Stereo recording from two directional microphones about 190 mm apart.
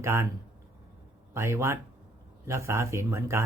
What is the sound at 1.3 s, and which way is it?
Speech, 15° right (ahead or behind).